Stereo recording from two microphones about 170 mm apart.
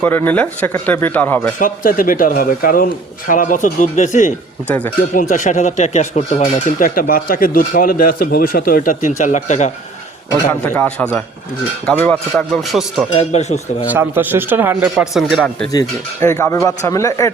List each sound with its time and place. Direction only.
0.0 s speech: 10° left (ahead or behind)
1.5 s speech: 55° left (ahead or behind)
10.6 s speech: 10° left (ahead or behind)
13.1 s speech: 40° left (ahead or behind)
13.8 s speech: 10° right (ahead or behind)
15.7 s speech: 20° left (ahead or behind)